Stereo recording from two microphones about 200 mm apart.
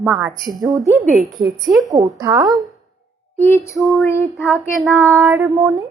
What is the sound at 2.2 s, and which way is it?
Speech, 15° right (ahead or behind).